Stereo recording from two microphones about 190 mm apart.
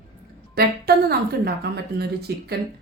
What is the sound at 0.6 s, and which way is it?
Speech, 55° right (ahead or behind).